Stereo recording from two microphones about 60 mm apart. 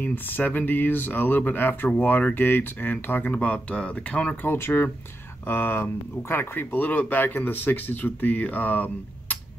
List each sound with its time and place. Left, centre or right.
0.0 s speech: left
3.3 s speech: centre
4.4 s speech: left